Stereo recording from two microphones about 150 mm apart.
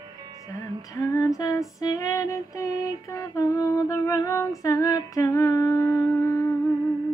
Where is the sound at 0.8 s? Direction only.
20° left (ahead or behind).